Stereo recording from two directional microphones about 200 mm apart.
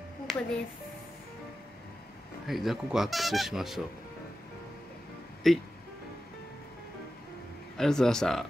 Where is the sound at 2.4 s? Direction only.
Centre (ahead or behind).